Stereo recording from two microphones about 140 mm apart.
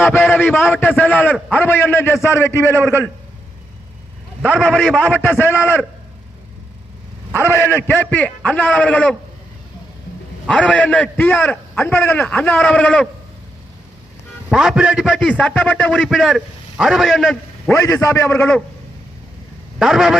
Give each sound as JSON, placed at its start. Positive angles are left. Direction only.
{"t": 0.3, "sound": "a man's voice", "side_deg": 15}
{"t": 4.4, "sound": "a man's voice", "side_deg": 10}
{"t": 7.4, "sound": "a man's voice", "side_deg": 15}
{"t": 10.4, "sound": "a man's voice", "side_deg": 10}
{"t": 14.5, "sound": "a man's voice", "side_deg": -5}
{"t": 17.7, "sound": "a man's voice", "side_deg": 20}
{"t": 19.8, "sound": "a man's voice", "side_deg": 0}